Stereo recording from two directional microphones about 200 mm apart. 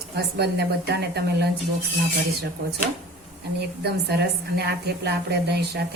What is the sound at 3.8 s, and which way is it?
A woman's voice, 55° right (ahead or behind).